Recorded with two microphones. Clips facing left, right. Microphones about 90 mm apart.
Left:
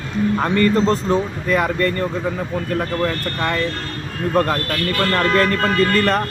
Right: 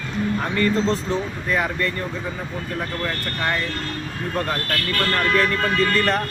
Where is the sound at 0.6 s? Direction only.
50° left (ahead or behind).